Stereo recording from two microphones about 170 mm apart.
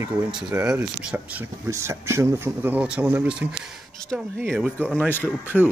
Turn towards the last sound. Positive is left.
turn(degrees=-10)  # may be behind; listen again after turning